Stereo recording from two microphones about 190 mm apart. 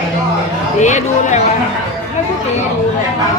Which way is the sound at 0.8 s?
40° left (ahead or behind).